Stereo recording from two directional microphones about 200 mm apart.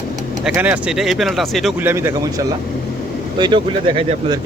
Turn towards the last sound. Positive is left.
turn(degrees=-25)  # may be behind; listen again after turning